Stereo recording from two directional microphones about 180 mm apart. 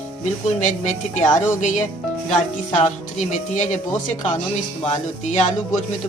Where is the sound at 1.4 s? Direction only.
40° left (ahead or behind).